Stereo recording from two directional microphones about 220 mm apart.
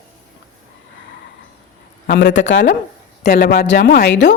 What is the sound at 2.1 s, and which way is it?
A woman's voice, 55° left (ahead or behind).